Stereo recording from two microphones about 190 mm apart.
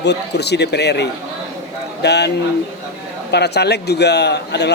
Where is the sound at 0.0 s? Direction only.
65° left (ahead or behind).